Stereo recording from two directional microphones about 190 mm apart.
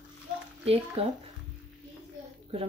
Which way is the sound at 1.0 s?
30° right (ahead or behind).